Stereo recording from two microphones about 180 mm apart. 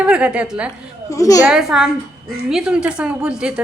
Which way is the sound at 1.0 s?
20° left (ahead or behind).